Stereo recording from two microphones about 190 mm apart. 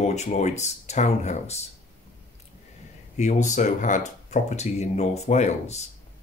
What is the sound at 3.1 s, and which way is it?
Speech, 40° left (ahead or behind).